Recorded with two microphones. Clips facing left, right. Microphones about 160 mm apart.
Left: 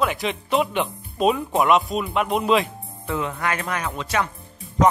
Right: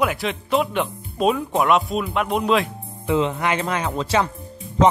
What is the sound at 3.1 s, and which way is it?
Speech, 20° right (ahead or behind).